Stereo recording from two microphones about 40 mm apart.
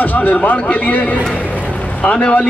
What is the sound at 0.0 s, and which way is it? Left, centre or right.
A man's voice, left.